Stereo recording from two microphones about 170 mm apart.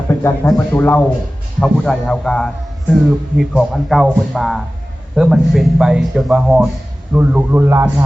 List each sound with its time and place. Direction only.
0.1 s a man's voice: 15° left (ahead or behind); by 8.0 s 15° right (ahead or behind)